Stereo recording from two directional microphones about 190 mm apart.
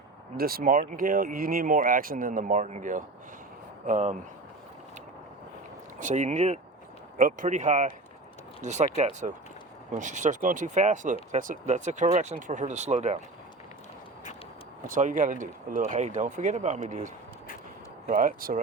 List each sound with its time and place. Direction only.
0.3 s speech: 50° right (ahead or behind)
6.0 s speech: 40° right (ahead or behind)
14.8 s speech: 45° right (ahead or behind)
18.1 s speech: 45° right (ahead or behind)